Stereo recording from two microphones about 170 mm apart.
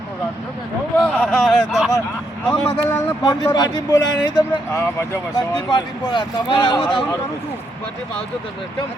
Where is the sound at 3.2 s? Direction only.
25° left (ahead or behind).